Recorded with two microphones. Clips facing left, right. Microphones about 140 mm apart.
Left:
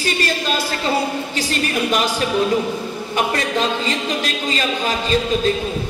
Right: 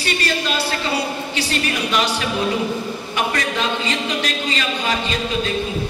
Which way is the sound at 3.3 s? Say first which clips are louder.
Left 2 dB; 40° left (ahead or behind).